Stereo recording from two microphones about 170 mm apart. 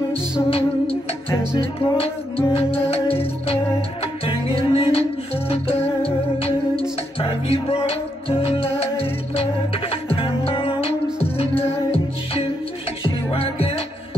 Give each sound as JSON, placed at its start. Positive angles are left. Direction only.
{"t": 0.5, "sound": "music", "side_deg": 35}